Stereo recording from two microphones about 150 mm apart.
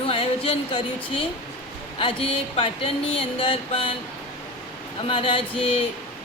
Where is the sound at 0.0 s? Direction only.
40° left (ahead or behind).